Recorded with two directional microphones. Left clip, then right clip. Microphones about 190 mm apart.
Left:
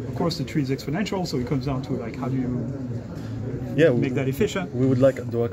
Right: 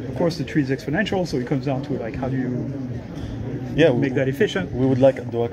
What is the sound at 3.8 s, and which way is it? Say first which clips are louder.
Speech: right 2 dB; 20° left (ahead or behind).